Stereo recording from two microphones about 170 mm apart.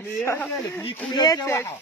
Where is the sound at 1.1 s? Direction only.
25° left (ahead or behind).